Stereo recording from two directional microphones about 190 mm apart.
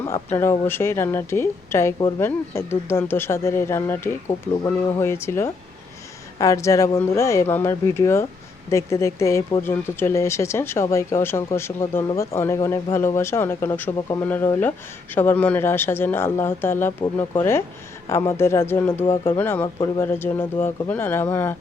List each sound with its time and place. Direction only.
0.0 s speech: 15° left (ahead or behind)
18.1 s speech: 15° left (ahead or behind)
19.0 s speech: 25° left (ahead or behind)
19.4 s speech: 10° left (ahead or behind)